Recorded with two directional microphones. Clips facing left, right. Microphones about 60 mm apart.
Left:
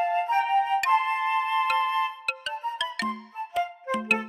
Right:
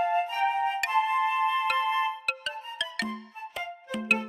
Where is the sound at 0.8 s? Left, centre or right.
Centre.